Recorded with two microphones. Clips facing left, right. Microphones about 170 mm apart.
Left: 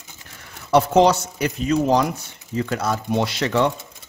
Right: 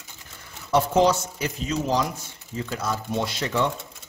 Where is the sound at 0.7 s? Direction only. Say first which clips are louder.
Left 4 dB; 75° left (ahead or behind).